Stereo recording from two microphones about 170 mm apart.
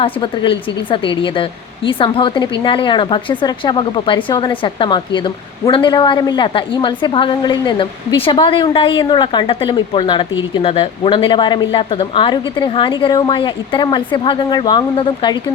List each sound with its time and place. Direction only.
0.0 s a woman's voice: 30° left (ahead or behind)